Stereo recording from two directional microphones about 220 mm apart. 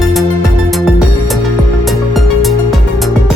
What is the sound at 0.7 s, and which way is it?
Music, centre (ahead or behind).